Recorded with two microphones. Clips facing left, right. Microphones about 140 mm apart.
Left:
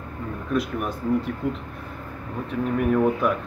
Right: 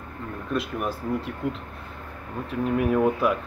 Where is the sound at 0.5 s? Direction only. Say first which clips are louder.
Left 2 dB; centre (ahead or behind).